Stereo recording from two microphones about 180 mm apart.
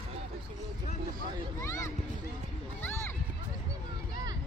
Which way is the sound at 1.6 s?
15° left (ahead or behind).